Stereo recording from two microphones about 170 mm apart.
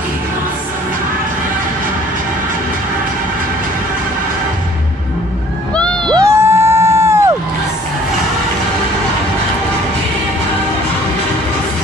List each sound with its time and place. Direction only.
6.0 s crowd: 15° right (ahead or behind)